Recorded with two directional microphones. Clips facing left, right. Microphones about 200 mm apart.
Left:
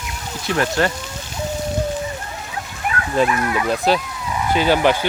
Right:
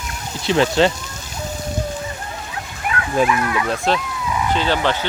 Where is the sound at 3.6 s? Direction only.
5° left (ahead or behind).